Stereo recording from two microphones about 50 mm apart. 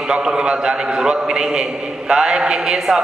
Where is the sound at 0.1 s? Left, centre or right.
Centre.